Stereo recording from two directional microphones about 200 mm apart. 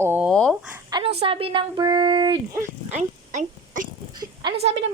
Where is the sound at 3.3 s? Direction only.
40° right (ahead or behind).